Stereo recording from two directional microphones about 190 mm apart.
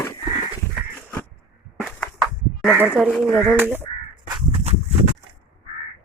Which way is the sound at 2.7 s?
5° right (ahead or behind).